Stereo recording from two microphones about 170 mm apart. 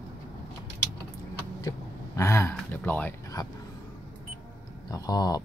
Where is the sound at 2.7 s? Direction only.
10° left (ahead or behind).